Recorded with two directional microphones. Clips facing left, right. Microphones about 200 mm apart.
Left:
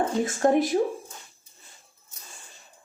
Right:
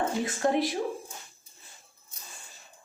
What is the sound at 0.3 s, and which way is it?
Speech, 45° left (ahead or behind).